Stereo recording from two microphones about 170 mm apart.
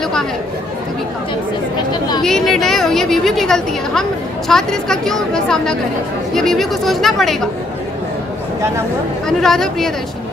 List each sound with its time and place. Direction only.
1.9 s speech: 25° left (ahead or behind)
2.2 s a woman's voice: 5° left (ahead or behind)
9.4 s a woman's voice: centre (ahead or behind)